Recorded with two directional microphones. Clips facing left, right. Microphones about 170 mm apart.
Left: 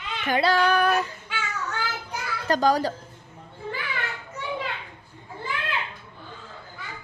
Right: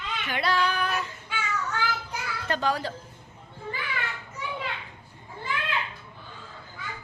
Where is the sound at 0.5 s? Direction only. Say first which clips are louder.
Left 5 dB; 60° left (ahead or behind).